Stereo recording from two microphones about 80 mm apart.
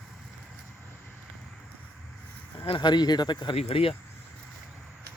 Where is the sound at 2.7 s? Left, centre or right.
Left.